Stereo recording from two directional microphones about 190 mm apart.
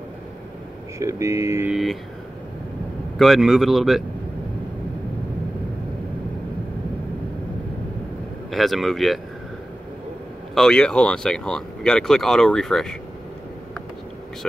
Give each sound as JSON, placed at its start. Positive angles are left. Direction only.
{"t": 0.9, "sound": "speech", "side_deg": -15}
{"t": 1.7, "sound": "speech", "side_deg": 0}
{"t": 3.2, "sound": "speech", "side_deg": 0}
{"t": 8.5, "sound": "speech", "side_deg": 0}
{"t": 10.5, "sound": "speech", "side_deg": 5}